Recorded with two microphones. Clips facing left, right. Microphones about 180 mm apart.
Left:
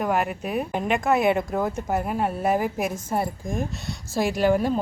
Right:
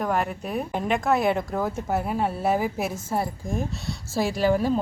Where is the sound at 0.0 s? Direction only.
5° left (ahead or behind).